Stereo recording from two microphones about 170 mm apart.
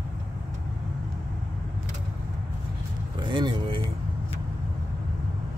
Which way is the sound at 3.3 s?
30° right (ahead or behind).